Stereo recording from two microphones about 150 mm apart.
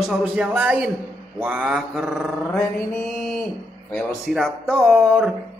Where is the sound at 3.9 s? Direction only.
5° left (ahead or behind).